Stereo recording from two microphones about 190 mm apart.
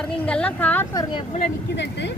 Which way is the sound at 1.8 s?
65° left (ahead or behind).